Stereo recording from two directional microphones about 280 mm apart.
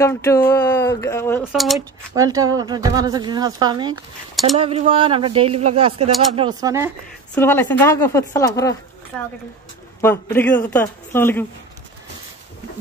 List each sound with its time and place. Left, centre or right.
0.0 s speech: centre
2.1 s speech: centre
7.3 s speech: centre
10.0 s speech: centre